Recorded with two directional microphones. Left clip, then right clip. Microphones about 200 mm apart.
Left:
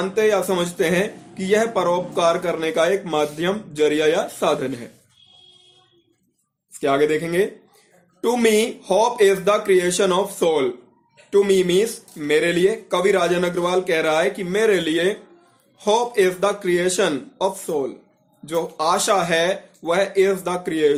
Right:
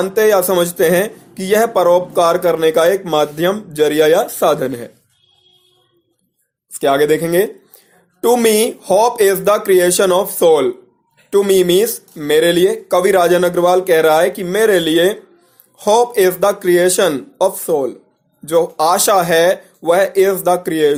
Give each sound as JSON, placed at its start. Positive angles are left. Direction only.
{"t": 0.0, "sound": "speech", "side_deg": -40}
{"t": 6.7, "sound": "speech", "side_deg": -45}